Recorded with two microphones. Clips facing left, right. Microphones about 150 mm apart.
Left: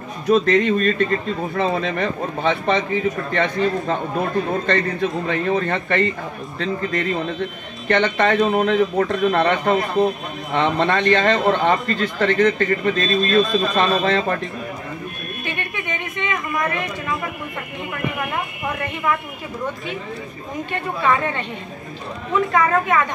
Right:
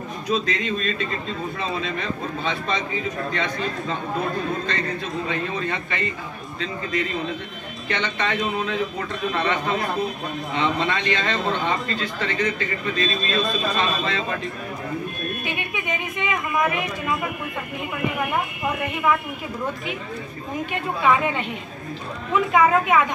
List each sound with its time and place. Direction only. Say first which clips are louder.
0.3 s a man's voice: left 9 dB; 55° left (ahead or behind)
4.6 s a man's voice: left 7 dB; 60° left (ahead or behind)
15.4 s a sound: even; 10° right (ahead or behind)
20.7 s speech: even; 10° right (ahead or behind)
22.5 s speech: right 2 dB; 10° right (ahead or behind)